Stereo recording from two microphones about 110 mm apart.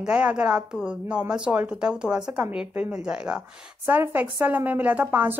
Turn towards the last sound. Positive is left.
turn(degrees=-15)  # may be behind; listen again after turning